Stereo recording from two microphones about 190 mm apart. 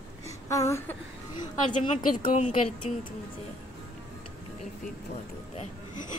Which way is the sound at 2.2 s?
45° left (ahead or behind).